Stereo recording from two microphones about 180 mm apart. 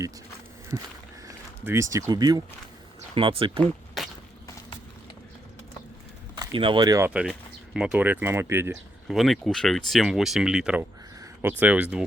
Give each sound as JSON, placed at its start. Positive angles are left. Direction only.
{"t": 0.7, "sound": "speech", "side_deg": -15}
{"t": 3.6, "sound": "a sound", "side_deg": 0}
{"t": 6.4, "sound": "speech", "side_deg": -25}
{"t": 7.1, "sound": "speech", "side_deg": -5}
{"t": 9.0, "sound": "speech", "side_deg": 0}